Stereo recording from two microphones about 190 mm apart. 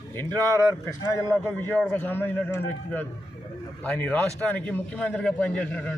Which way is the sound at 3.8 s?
10° left (ahead or behind).